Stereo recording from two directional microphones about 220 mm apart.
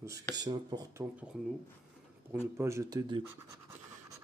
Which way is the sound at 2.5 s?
10° right (ahead or behind).